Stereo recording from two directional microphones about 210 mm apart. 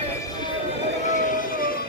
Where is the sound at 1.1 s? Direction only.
40° left (ahead or behind).